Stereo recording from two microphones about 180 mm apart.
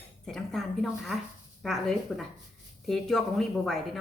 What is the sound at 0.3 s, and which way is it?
Speech, centre (ahead or behind).